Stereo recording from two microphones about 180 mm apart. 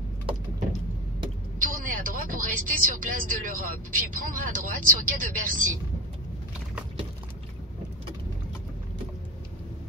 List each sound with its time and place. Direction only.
1.6 s speech: 50° right (ahead or behind)